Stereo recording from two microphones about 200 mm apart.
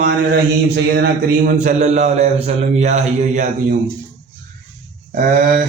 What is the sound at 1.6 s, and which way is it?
A man's voice, 35° right (ahead or behind).